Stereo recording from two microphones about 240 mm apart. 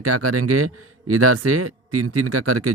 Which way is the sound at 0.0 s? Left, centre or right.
Right.